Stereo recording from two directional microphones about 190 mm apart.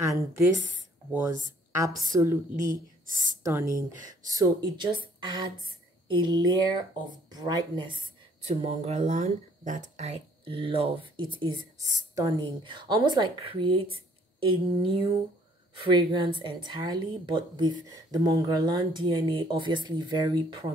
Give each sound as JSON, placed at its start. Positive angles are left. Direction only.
{"t": 1.1, "sound": "a woman's voice", "side_deg": -15}
{"t": 8.5, "sound": "a woman's voice", "side_deg": -35}